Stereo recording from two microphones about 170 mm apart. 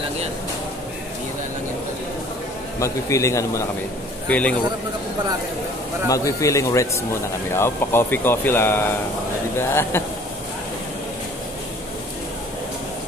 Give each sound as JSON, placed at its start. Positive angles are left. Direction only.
{"t": 2.8, "sound": "speech", "side_deg": 20}
{"t": 6.0, "sound": "a man's voice", "side_deg": 20}